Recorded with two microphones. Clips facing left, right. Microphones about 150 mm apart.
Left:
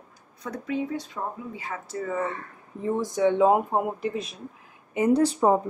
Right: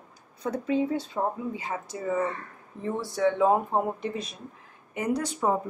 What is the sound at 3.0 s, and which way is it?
Speech, 15° left (ahead or behind).